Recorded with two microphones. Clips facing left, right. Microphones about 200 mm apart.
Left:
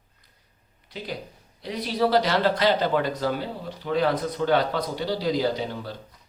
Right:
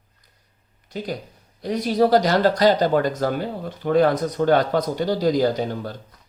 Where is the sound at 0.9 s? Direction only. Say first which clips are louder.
Right 5 dB; 45° right (ahead or behind).